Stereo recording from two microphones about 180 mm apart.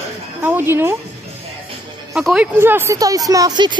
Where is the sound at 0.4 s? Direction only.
15° right (ahead or behind).